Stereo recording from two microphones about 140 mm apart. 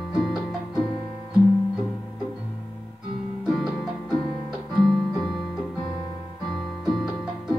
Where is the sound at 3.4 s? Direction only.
Centre (ahead or behind).